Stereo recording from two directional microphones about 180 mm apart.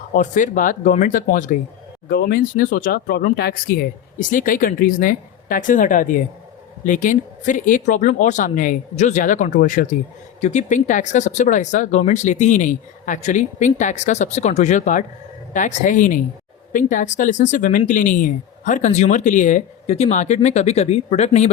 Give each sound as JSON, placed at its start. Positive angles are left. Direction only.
{"t": 0.1, "sound": "speech", "side_deg": 45}